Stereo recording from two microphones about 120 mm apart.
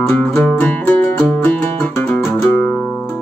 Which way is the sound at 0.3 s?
10° left (ahead or behind).